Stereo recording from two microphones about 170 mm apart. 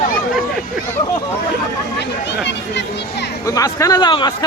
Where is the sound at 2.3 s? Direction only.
90° left.